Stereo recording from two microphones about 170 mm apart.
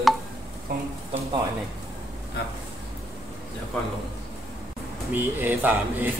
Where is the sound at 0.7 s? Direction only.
60° right (ahead or behind).